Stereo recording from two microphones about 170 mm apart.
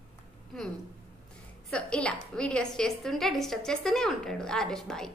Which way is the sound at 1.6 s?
5° left (ahead or behind).